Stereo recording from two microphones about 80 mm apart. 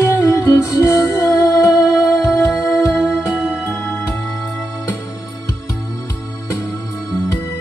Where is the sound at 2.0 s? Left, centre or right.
Centre.